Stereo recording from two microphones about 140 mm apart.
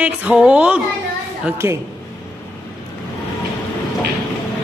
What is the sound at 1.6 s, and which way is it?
Speech, 20° right (ahead or behind).